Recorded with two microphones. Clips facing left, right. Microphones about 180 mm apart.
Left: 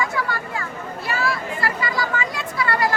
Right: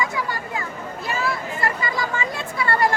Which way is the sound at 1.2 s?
20° right (ahead or behind).